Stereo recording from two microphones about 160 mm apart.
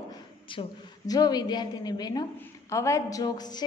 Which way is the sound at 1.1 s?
25° left (ahead or behind).